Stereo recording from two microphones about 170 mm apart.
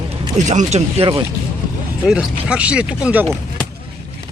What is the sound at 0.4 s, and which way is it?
Speech, 45° right (ahead or behind).